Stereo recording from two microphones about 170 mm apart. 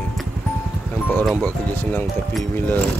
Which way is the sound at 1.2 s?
10° left (ahead or behind).